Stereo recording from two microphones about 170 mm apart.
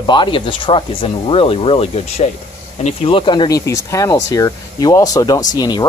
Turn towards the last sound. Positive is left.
turn(degrees=25)  # may be behind; listen again after turning